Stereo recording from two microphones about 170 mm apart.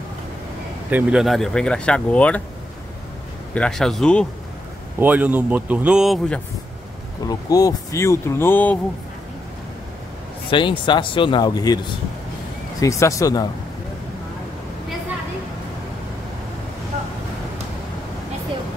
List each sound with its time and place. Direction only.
0.8 s speech: 5° right (ahead or behind)
3.5 s speech: 5° left (ahead or behind)
5.0 s speech: 10° right (ahead or behind)
7.2 s speech: 20° left (ahead or behind)
10.5 s speech: 30° left (ahead or behind)